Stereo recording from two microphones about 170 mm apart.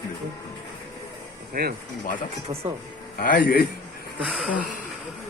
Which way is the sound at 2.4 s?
35° right (ahead or behind).